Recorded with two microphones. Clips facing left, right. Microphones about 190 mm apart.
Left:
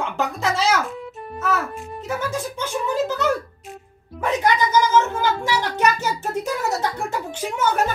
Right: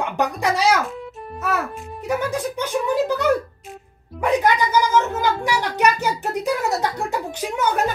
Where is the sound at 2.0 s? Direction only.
15° right (ahead or behind).